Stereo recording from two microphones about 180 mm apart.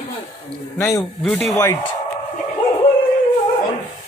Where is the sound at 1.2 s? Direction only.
Centre (ahead or behind).